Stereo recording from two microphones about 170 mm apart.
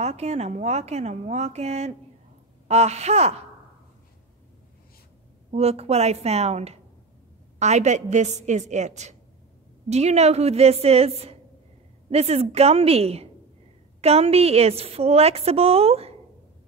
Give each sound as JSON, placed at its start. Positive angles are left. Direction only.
{"t": 0.0, "sound": "a woman's voice", "side_deg": -40}
{"t": 5.5, "sound": "a woman's voice", "side_deg": -35}